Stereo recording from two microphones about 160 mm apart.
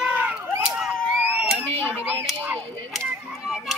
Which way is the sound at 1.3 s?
5° right (ahead or behind).